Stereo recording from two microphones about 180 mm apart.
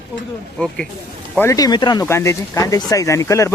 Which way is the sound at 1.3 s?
15° left (ahead or behind).